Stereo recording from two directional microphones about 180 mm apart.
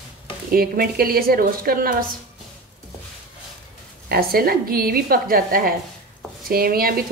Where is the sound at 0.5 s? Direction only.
55° right (ahead or behind).